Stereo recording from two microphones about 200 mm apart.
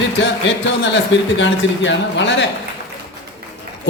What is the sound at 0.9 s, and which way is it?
A man's voice, 65° left (ahead or behind).